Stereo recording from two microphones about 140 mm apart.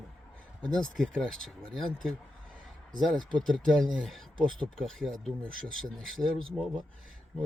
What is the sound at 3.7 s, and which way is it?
Speech, centre (ahead or behind).